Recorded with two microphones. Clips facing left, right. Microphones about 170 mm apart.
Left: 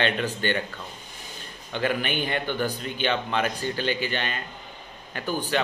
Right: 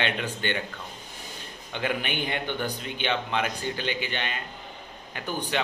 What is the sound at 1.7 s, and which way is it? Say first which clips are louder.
Speech: left 3 dB; 15° right (ahead or behind).